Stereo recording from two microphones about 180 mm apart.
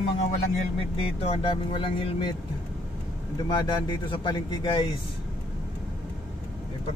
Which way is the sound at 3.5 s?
25° left (ahead or behind).